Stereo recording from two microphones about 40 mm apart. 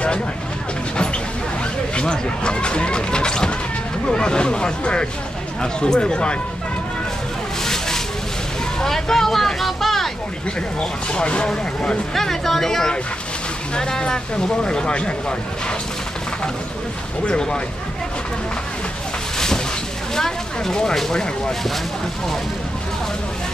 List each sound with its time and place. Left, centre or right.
2.0 s speech: left
7.6 s a sound: centre
8.8 s speech: centre
10.8 s speech: left
12.1 s speech: centre; by 15.3 s left
17.3 s speech: left
19.3 s a sound: centre
20.2 s speech: centre